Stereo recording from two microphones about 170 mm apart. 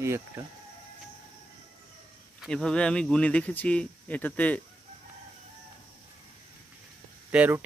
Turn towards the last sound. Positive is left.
turn(degrees=-10)  # may be behind; listen again after turning